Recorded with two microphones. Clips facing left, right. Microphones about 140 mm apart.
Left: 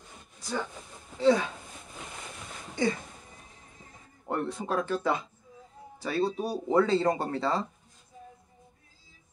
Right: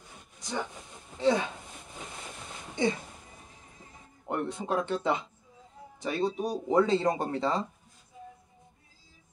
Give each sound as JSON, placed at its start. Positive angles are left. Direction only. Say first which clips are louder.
{"t": 1.2, "sound": "speech", "louder": "left 3 dB", "side_deg": -20}
{"t": 2.7, "sound": "a sound", "louder": "even", "side_deg": -20}
{"t": 4.3, "sound": "speech", "louder": "even", "side_deg": -20}